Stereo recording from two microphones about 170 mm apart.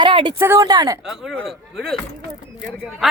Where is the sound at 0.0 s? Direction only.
30° right (ahead or behind).